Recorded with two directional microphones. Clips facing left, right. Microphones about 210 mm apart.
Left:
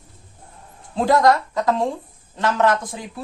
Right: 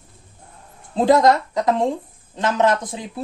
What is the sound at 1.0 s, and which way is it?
Speech, 20° right (ahead or behind).